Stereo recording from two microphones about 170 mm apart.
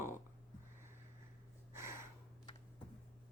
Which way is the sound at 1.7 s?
15° right (ahead or behind).